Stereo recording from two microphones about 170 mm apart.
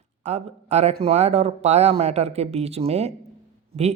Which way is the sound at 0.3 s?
40° right (ahead or behind).